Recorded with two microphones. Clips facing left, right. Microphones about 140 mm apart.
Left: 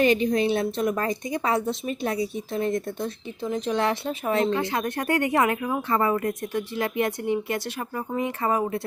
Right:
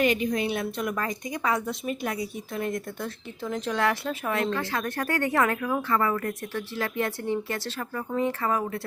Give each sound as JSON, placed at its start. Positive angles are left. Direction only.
{"t": 0.0, "sound": "a woman's voice", "side_deg": 30}